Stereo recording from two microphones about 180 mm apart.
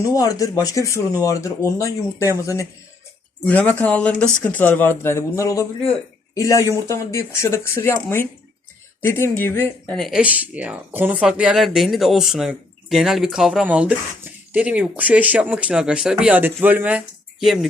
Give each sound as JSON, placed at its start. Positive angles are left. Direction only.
{"t": 0.0, "sound": "speech", "side_deg": 20}
{"t": 9.0, "sound": "speech", "side_deg": 15}